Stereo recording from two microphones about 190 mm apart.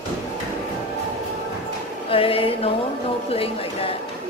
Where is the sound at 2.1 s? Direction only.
30° left (ahead or behind).